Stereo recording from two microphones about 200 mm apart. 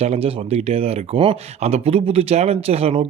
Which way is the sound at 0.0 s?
30° right (ahead or behind).